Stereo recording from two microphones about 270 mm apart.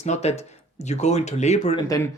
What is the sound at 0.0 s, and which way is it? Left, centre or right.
Speech, left.